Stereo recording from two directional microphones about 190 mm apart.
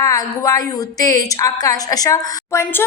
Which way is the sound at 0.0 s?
15° left (ahead or behind).